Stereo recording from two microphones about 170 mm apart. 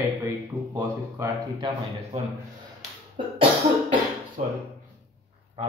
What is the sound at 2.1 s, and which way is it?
A man's voice, 35° right (ahead or behind).